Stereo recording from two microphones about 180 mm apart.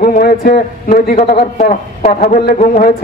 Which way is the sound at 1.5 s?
45° left (ahead or behind).